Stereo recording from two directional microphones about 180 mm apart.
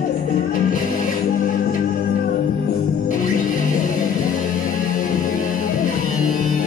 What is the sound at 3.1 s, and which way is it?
Music, 45° left (ahead or behind).